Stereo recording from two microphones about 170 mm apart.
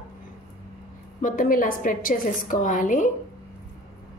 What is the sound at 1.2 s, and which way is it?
A woman's voice, 55° left (ahead or behind).